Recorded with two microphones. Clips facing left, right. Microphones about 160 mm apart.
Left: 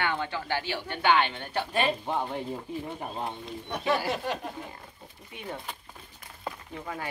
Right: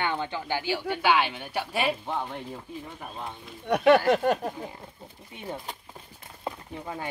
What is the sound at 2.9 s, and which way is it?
Speech, 30° left (ahead or behind).